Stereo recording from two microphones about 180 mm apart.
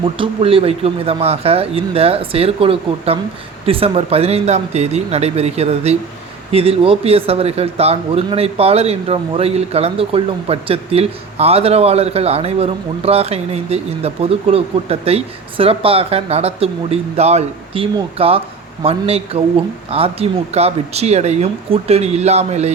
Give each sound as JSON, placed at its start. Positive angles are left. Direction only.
{"t": 0.0, "sound": "speech", "side_deg": -30}